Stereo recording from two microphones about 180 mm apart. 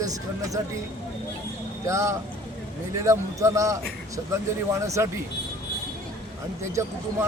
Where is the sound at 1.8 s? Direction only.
15° right (ahead or behind).